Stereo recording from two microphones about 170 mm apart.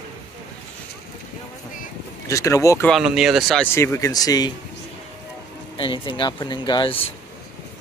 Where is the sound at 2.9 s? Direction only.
Centre (ahead or behind).